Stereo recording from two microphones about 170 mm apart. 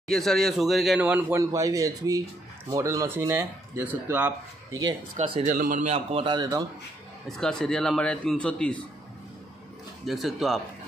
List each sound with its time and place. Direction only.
0.1 s speech: centre (ahead or behind)
5.2 s a man's voice: 40° right (ahead or behind)
5.9 s a man's voice: 30° right (ahead or behind)
7.2 s a man's voice: 5° left (ahead or behind)
10.0 s a man's voice: centre (ahead or behind)